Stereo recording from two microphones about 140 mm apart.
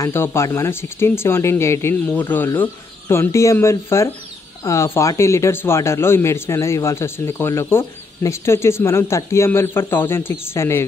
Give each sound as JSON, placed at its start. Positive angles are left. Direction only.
{"t": 0.0, "sound": "speech", "side_deg": 20}